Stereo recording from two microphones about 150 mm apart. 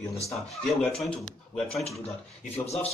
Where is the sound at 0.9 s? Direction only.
Centre (ahead or behind).